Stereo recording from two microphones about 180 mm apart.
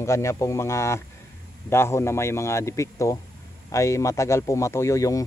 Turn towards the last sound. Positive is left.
turn(degrees=15)  # may be behind; listen again after turning